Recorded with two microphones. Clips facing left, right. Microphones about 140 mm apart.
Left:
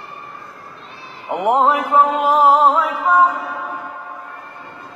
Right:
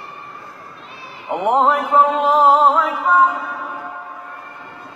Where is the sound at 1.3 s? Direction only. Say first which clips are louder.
Even; centre (ahead or behind).